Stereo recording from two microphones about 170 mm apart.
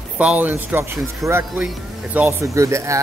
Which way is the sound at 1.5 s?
5° right (ahead or behind).